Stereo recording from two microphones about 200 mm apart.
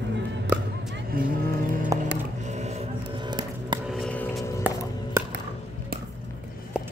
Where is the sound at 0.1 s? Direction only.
65° right (ahead or behind).